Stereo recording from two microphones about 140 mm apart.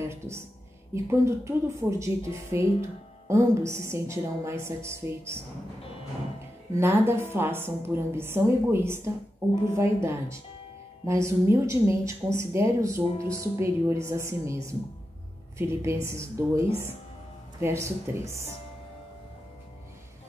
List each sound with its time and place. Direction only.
0.0 s a woman's voice: 20° right (ahead or behind)
6.7 s a woman's voice: 20° right (ahead or behind)